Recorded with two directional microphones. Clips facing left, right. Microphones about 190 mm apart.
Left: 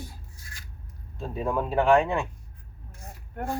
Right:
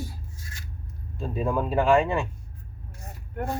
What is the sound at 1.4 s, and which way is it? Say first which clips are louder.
Speech: even; 5° right (ahead or behind).